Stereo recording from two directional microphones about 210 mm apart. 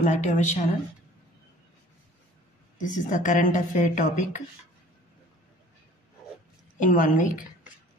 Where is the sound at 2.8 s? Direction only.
35° left (ahead or behind).